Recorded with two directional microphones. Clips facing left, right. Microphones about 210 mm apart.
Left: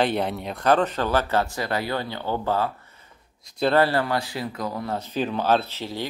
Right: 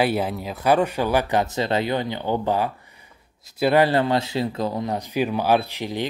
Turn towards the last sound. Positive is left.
turn(degrees=-15)  # may be behind; listen again after turning